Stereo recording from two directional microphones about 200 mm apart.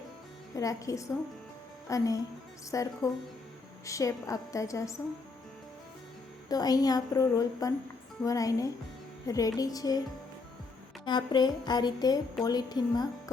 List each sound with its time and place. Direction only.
0.5 s a woman's voice: 15° left (ahead or behind)
6.5 s a woman's voice: 20° left (ahead or behind)
11.0 s a woman's voice: 20° left (ahead or behind)